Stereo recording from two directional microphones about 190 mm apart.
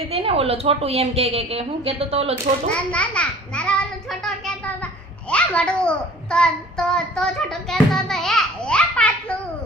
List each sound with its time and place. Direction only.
0.1 s a woman's voice: 30° right (ahead or behind)
2.7 s a child's voice: 5° left (ahead or behind)
4.2 s a sound: 5° left (ahead or behind)
5.3 s a child's voice: 5° left (ahead or behind)